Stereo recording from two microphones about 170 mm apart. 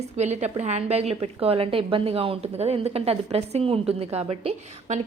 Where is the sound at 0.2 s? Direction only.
40° right (ahead or behind).